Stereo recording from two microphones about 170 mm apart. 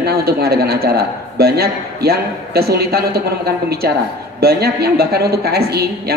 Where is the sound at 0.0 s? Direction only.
65° right (ahead or behind).